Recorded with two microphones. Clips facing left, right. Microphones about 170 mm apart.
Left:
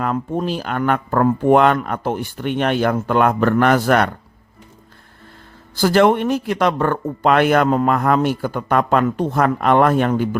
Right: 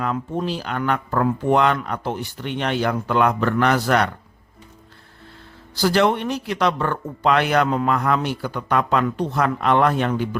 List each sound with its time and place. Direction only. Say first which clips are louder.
0.0 s speech: left 3 dB; 45° left (ahead or behind)
5.7 s speech: left 4 dB; 50° left (ahead or behind)